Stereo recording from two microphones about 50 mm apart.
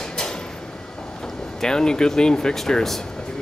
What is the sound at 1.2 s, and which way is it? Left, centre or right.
Speech, centre.